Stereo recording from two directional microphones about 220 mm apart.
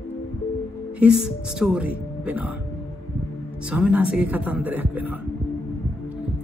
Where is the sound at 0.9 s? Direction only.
5° right (ahead or behind).